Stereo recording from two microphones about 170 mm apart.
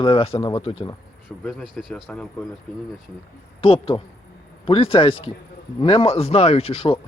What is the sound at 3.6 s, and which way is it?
Speech, 35° left (ahead or behind).